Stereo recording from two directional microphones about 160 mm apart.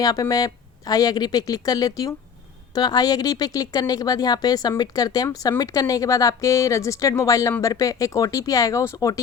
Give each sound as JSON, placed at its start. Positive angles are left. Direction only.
{"t": 0.0, "sound": "speech", "side_deg": 25}